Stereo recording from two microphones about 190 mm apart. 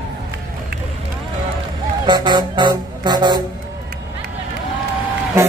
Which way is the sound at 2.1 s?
20° right (ahead or behind).